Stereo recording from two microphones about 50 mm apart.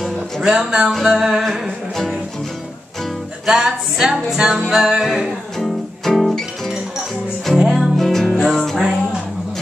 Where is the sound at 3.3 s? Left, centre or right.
Centre.